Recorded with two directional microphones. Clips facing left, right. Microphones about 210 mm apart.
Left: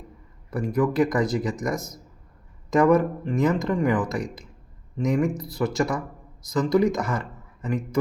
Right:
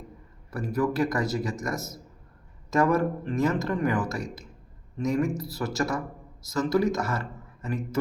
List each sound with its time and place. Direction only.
0.5 s speech: 15° left (ahead or behind)